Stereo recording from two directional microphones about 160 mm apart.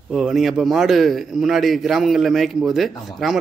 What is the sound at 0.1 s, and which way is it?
A man's voice, centre (ahead or behind).